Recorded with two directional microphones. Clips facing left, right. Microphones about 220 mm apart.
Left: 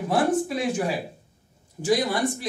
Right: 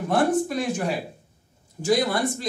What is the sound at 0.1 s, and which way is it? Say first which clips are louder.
Speech: right 1 dB; 5° left (ahead or behind).